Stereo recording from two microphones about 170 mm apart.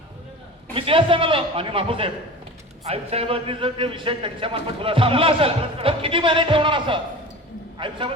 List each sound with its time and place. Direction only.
0.7 s a man's voice: 30° right (ahead or behind)